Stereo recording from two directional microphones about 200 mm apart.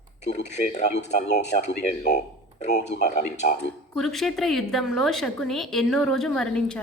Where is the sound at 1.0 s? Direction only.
55° left (ahead or behind).